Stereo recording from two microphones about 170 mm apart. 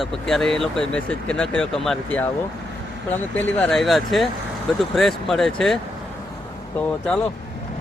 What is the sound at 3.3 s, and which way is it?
Speech, 10° left (ahead or behind).